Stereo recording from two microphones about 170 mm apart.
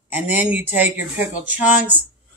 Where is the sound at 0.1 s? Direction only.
10° right (ahead or behind).